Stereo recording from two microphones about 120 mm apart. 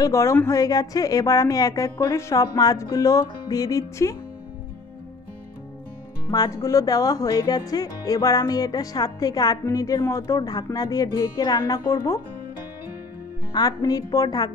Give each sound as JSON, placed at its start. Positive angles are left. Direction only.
{"t": 0.0, "sound": "speech", "side_deg": 25}
{"t": 6.2, "sound": "speech", "side_deg": 30}
{"t": 13.5, "sound": "a woman's voice", "side_deg": 35}